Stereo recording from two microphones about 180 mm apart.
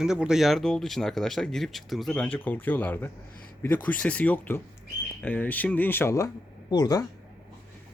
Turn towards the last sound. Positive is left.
turn(degrees=20)  # may be behind; listen again after turning